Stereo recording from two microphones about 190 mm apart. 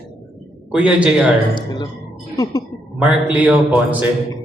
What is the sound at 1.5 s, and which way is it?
Speech, 25° left (ahead or behind).